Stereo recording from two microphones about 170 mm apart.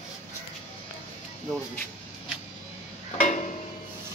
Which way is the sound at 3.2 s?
45° left (ahead or behind).